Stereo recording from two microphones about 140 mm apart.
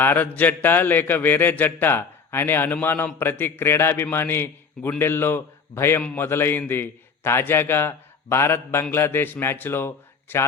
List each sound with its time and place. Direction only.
0.0 s speech: 15° left (ahead or behind)